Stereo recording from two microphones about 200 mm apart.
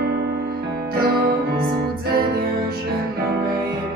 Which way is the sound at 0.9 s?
50° right (ahead or behind).